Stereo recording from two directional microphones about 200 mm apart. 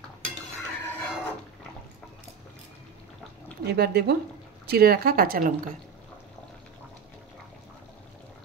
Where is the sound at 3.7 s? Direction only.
50° right (ahead or behind).